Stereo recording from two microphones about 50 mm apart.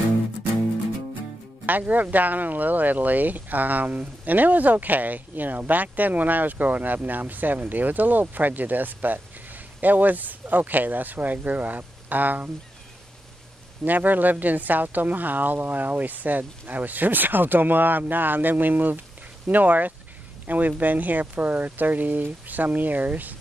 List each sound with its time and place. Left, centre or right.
1.7 s speech: right
13.8 s speech: right